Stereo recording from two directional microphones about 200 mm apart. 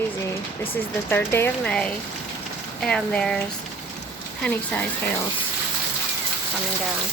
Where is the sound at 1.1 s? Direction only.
10° left (ahead or behind).